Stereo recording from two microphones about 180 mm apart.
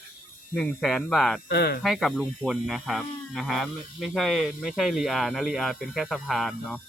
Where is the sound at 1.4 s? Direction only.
60° left (ahead or behind).